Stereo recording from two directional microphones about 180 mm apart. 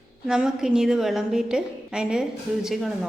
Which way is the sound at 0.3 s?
5° right (ahead or behind).